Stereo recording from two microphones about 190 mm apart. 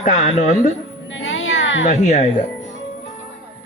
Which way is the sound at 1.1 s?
90° left.